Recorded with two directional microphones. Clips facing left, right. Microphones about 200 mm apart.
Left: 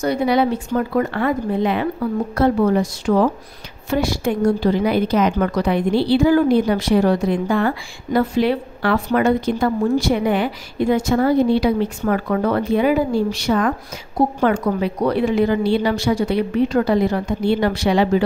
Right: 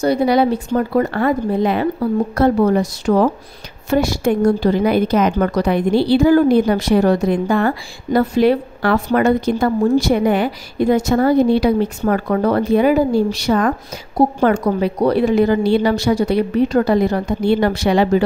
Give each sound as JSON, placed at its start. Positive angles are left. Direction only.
{"t": 0.0, "sound": "a woman's voice", "side_deg": -35}